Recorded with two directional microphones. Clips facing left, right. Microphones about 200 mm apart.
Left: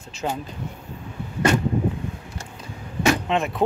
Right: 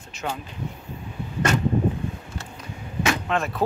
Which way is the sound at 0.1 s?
30° left (ahead or behind).